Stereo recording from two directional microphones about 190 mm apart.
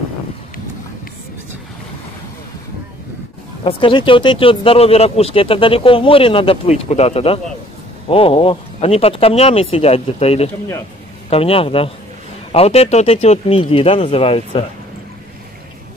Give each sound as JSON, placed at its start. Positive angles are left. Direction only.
{"t": 3.6, "sound": "speech", "side_deg": 25}